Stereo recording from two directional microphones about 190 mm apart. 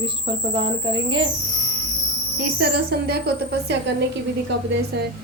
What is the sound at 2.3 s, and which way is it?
Speech, 55° right (ahead or behind).